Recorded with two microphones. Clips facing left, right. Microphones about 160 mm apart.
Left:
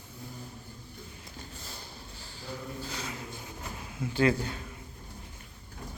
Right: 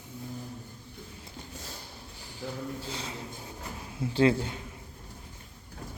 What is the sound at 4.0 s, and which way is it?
Speech, 30° right (ahead or behind).